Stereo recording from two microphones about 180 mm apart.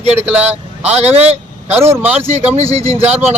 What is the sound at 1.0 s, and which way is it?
Speech, 35° right (ahead or behind).